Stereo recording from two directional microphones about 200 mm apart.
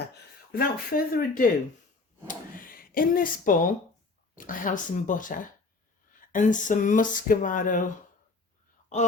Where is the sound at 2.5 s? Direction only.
45° left (ahead or behind).